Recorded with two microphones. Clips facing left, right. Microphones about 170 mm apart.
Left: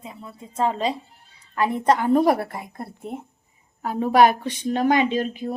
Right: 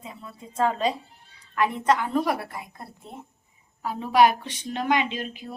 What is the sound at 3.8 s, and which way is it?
A woman's voice, 50° left (ahead or behind).